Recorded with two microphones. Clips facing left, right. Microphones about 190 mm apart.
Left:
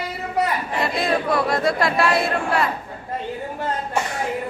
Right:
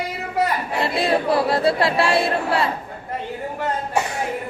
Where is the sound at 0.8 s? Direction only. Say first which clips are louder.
Right 2 dB; 30° right (ahead or behind).